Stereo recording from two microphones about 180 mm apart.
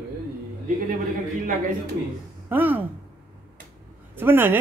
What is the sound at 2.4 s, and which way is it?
Speech, 10° right (ahead or behind).